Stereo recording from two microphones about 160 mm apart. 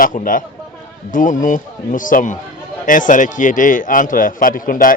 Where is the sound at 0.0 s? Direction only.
55° left (ahead or behind).